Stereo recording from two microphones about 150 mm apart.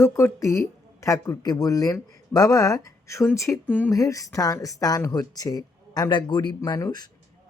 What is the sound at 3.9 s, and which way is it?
Speech, 20° left (ahead or behind).